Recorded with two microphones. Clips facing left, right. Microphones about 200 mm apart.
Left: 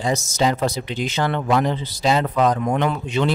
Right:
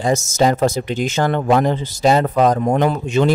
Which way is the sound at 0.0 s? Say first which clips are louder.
Right 4 dB; 50° right (ahead or behind).